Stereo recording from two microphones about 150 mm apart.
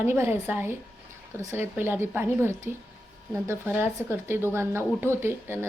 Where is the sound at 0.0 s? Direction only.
15° right (ahead or behind).